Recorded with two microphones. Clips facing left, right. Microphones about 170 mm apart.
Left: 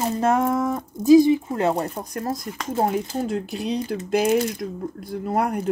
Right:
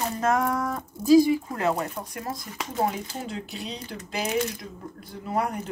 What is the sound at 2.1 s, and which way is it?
Speech, 45° left (ahead or behind).